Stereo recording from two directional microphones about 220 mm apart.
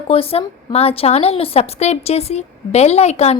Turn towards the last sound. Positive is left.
turn(degrees=30)  # may be behind; listen again after turning